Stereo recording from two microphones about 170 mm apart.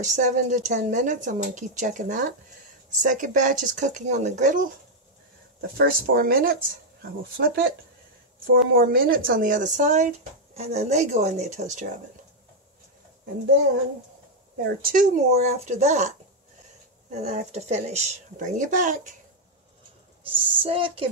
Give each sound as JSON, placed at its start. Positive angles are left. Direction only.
{"t": 0.0, "sound": "speech", "side_deg": -45}
{"t": 5.6, "sound": "speech", "side_deg": -60}
{"t": 7.0, "sound": "speech", "side_deg": -70}
{"t": 8.7, "sound": "speech", "side_deg": -60}
{"t": 14.6, "sound": "speech", "side_deg": -60}
{"t": 15.3, "sound": "a woman's voice", "side_deg": -40}
{"t": 20.2, "sound": "a woman's voice", "side_deg": -30}